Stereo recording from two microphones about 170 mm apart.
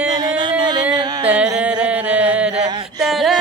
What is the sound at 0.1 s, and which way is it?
Music, 25° right (ahead or behind).